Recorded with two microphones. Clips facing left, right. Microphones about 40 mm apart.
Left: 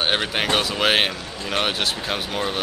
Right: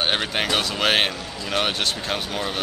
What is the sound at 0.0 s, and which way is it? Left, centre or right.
Speech, centre.